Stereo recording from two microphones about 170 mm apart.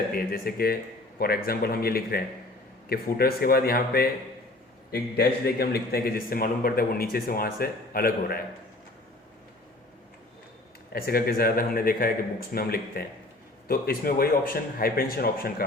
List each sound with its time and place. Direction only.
0.3 s a man's voice: 60° left (ahead or behind)
10.9 s a man's voice: 60° left (ahead or behind)